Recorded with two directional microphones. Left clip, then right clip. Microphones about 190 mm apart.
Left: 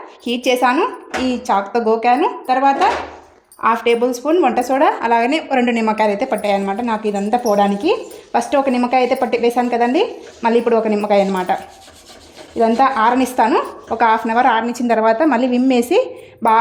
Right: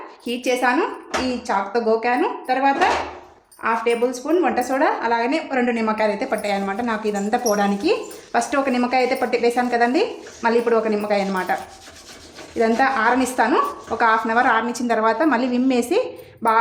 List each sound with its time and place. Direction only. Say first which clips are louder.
0.3 s speech: left 5 dB; 35° left (ahead or behind)
12.5 s speech: left 4 dB; 25° left (ahead or behind)